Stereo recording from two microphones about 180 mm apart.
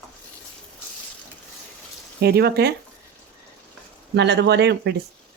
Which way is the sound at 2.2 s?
65° right (ahead or behind).